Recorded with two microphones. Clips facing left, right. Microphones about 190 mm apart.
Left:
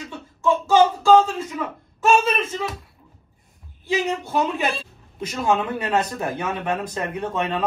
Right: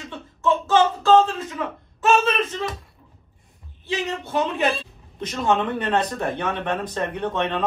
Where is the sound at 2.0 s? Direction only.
Centre (ahead or behind).